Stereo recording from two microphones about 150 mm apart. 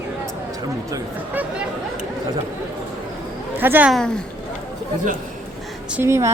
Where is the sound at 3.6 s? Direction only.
10° right (ahead or behind).